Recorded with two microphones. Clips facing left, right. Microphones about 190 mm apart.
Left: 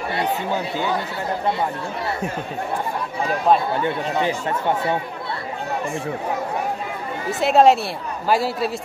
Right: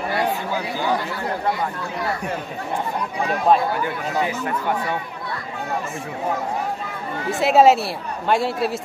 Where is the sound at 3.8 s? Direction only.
30° left (ahead or behind).